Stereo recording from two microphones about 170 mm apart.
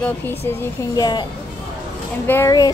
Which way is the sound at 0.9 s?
25° left (ahead or behind).